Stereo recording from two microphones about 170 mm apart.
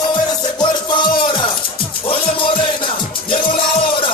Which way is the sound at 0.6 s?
25° left (ahead or behind).